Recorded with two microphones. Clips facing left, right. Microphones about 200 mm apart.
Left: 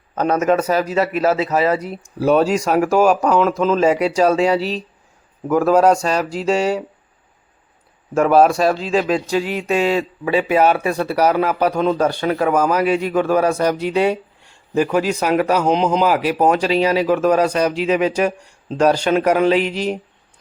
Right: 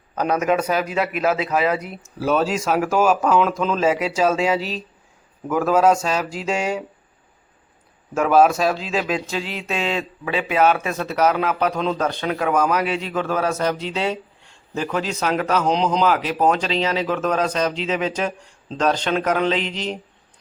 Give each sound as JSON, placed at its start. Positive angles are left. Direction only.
{"t": 0.2, "sound": "a man's voice", "side_deg": -10}
{"t": 1.0, "sound": "a man's voice", "side_deg": 35}
{"t": 2.6, "sound": "speech", "side_deg": 5}
{"t": 4.5, "sound": "a man's voice", "side_deg": 40}
{"t": 5.5, "sound": "speech", "side_deg": 10}
{"t": 5.7, "sound": "a man's voice", "side_deg": -5}
{"t": 8.1, "sound": "speech", "side_deg": -5}
{"t": 9.4, "sound": "a sound", "side_deg": 45}
{"t": 9.6, "sound": "speech", "side_deg": 0}